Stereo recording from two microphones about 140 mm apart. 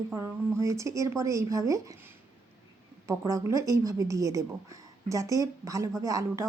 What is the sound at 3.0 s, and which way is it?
Speech, 20° right (ahead or behind).